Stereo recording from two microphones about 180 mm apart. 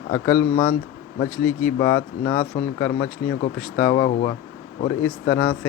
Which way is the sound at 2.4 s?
45° left (ahead or behind).